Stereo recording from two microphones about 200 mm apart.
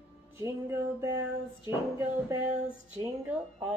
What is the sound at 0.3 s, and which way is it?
Speech, 15° right (ahead or behind).